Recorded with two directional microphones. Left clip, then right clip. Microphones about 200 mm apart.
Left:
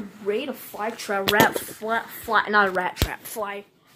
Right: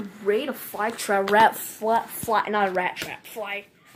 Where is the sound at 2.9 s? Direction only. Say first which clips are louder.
Left 1 dB; 30° left (ahead or behind).